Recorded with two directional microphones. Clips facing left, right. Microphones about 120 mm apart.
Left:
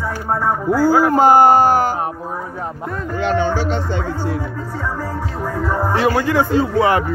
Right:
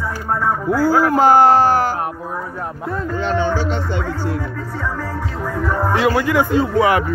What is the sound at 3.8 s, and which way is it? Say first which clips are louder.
Chopping: left 1 dB; 35° left (ahead or behind).